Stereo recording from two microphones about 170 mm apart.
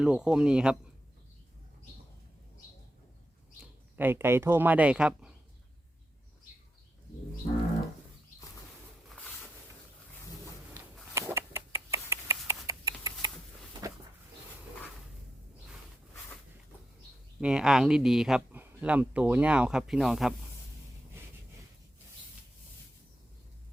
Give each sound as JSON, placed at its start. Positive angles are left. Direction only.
{"t": 0.0, "sound": "speech", "side_deg": -5}
{"t": 3.6, "sound": "speech", "side_deg": -10}
{"t": 10.8, "sound": "rodents", "side_deg": -15}
{"t": 17.4, "sound": "speech", "side_deg": -5}